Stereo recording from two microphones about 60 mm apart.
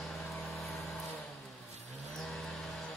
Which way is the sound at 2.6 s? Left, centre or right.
Centre.